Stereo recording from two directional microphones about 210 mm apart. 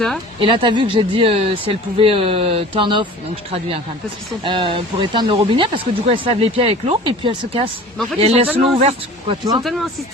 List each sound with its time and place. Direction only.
0.3 s speech: 25° right (ahead or behind)
4.4 s speech: 25° right (ahead or behind)